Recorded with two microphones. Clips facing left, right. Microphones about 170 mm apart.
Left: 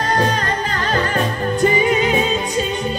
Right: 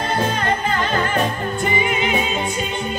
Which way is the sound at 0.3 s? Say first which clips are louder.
Right 1 dB; 40° left (ahead or behind).